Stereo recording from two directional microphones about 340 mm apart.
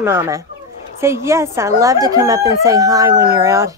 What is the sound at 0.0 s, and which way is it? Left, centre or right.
Speech, centre.